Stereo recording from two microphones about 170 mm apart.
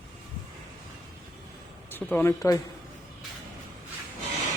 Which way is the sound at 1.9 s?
10° left (ahead or behind).